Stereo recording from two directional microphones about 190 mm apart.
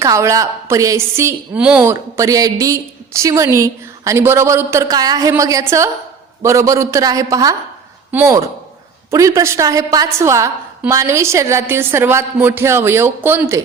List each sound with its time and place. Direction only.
0.0 s a woman's voice: 15° right (ahead or behind)